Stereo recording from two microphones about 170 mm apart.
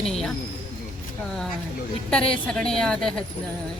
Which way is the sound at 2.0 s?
5° left (ahead or behind).